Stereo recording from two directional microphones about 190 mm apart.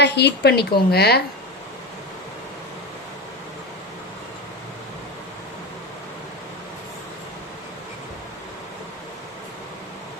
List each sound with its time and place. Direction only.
0.0 s speech: 65° left (ahead or behind)